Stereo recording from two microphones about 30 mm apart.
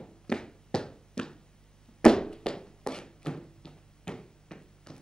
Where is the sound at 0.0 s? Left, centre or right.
Left.